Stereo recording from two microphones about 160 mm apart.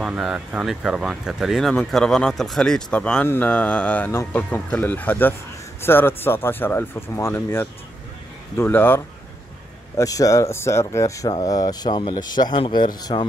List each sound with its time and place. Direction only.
0.0 s speech: 5° right (ahead or behind); by 13.2 s 30° left (ahead or behind)